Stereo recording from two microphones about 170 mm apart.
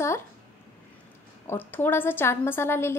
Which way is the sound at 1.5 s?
10° left (ahead or behind).